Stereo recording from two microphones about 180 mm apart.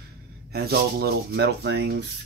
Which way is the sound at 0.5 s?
60° right (ahead or behind).